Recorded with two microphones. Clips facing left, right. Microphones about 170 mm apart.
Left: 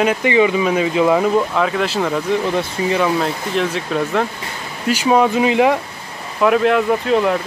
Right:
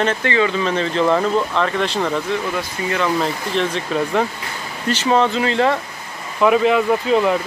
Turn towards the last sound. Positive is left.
turn(degrees=0)  # may be behind; listen again after turning